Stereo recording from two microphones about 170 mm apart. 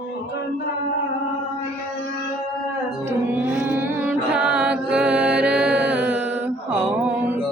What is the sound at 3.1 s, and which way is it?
Music, 10° right (ahead or behind).